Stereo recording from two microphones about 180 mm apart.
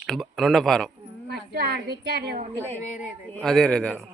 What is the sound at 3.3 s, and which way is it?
Speech, 5° left (ahead or behind).